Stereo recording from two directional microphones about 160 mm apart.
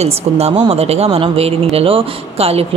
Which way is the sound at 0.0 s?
40° right (ahead or behind).